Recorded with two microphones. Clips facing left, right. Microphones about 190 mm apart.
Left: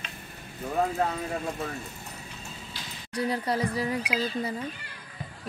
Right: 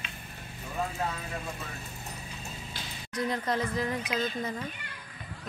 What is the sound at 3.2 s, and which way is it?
Speech, 10° left (ahead or behind).